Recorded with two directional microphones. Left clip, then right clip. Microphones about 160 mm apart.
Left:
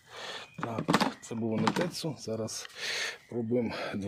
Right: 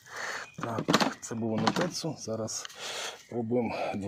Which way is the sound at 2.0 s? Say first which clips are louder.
Right 1 dB; 10° left (ahead or behind).